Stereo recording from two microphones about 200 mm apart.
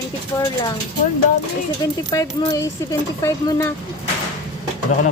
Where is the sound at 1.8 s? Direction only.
20° left (ahead or behind).